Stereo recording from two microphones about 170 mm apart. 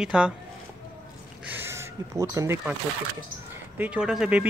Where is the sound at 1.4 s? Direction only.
15° right (ahead or behind).